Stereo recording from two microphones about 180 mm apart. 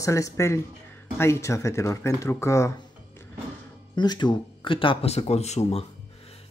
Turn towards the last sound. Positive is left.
turn(degrees=35)  # may be behind; listen again after turning